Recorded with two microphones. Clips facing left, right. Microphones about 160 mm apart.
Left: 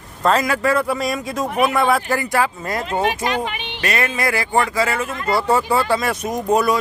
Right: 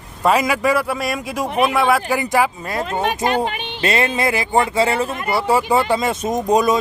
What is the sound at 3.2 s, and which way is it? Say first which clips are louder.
Speech: right 3 dB; 35° right (ahead or behind).